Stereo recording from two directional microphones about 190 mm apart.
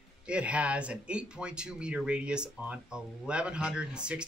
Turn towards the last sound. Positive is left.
turn(degrees=-5)  # may be behind; listen again after turning